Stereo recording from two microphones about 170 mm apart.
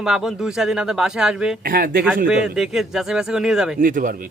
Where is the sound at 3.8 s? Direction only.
50° right (ahead or behind).